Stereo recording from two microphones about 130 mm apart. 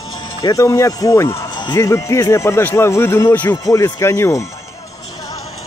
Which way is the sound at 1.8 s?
25° left (ahead or behind).